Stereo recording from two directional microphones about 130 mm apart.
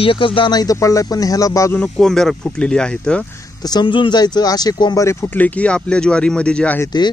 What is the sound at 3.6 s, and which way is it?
Speech, 35° left (ahead or behind).